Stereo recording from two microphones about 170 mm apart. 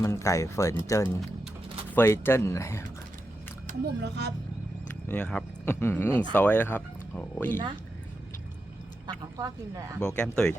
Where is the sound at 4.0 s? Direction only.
85° right.